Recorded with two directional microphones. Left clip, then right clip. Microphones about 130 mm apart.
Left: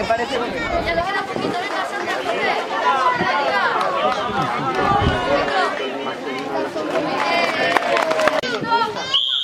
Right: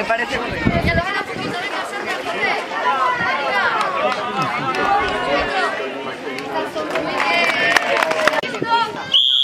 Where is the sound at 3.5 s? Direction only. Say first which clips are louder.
Right 1 dB; 5° right (ahead or behind).